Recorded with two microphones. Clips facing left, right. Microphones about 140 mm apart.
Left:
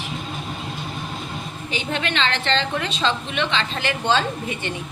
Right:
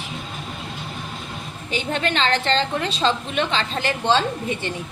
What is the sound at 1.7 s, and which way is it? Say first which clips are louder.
A woman's voice: right 2 dB; 45° right (ahead or behind).